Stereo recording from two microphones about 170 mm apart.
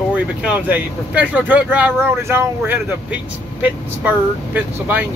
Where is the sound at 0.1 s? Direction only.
10° right (ahead or behind).